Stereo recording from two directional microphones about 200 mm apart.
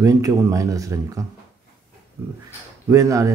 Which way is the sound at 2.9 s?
15° right (ahead or behind).